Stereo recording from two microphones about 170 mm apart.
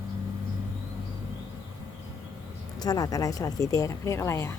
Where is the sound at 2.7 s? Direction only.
25° left (ahead or behind).